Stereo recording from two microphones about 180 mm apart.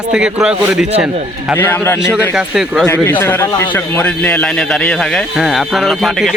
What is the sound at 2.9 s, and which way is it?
A man's voice, 10° left (ahead or behind).